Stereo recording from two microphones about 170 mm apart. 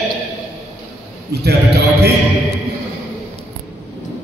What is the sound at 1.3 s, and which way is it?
Speech, 70° right (ahead or behind).